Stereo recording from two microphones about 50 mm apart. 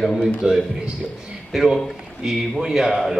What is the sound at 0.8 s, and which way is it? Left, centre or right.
A man's voice, centre.